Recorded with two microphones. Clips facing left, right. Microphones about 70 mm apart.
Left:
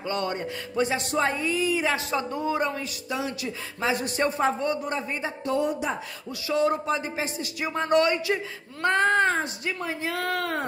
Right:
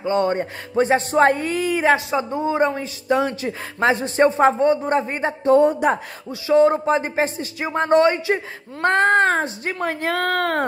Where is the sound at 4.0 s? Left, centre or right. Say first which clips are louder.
Right 9 dB; right.